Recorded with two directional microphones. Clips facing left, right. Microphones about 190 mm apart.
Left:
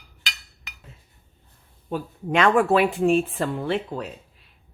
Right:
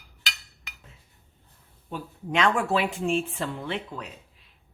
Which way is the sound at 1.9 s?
55° left (ahead or behind).